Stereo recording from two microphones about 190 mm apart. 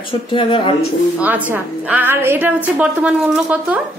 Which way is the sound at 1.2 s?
10° right (ahead or behind).